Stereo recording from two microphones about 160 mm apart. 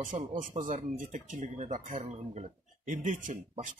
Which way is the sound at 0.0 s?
55° right (ahead or behind).